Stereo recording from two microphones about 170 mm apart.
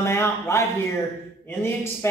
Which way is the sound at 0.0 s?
15° left (ahead or behind).